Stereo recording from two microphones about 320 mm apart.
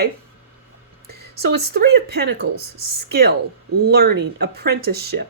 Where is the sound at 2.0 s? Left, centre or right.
Right.